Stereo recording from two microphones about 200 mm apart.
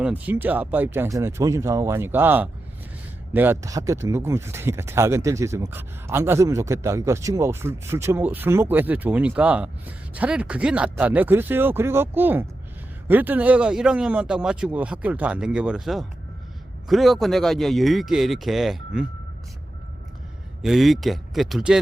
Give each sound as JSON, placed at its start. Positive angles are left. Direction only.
{"t": 0.0, "sound": "speech", "side_deg": -10}
{"t": 20.6, "sound": "speech", "side_deg": 0}